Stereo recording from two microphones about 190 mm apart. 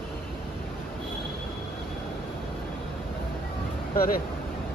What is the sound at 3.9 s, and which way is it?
Speech, 50° left (ahead or behind).